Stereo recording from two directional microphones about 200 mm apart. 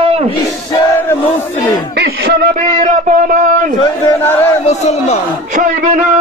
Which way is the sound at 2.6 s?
40° right (ahead or behind).